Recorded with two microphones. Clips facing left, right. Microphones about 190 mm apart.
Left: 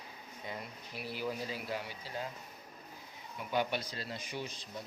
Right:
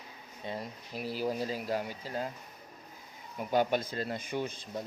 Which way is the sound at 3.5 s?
45° right (ahead or behind).